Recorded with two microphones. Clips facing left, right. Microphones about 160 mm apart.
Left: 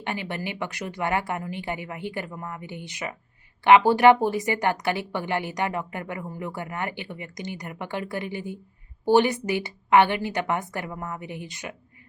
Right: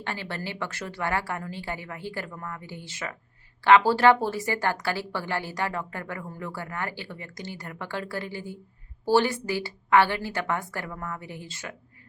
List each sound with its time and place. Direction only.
0.0 s a woman's voice: 15° left (ahead or behind)